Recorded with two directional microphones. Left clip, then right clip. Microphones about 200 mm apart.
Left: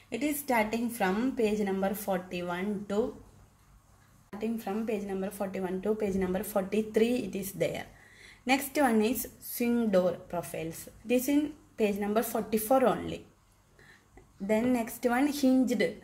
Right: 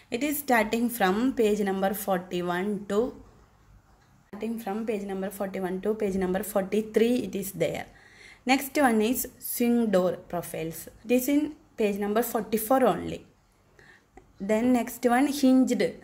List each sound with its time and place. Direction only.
0.1 s a woman's voice: 30° right (ahead or behind)
4.4 s a woman's voice: 15° right (ahead or behind)
14.4 s a woman's voice: 25° right (ahead or behind)